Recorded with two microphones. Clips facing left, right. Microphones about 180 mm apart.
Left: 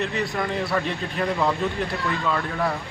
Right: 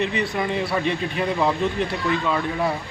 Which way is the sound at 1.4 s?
15° right (ahead or behind).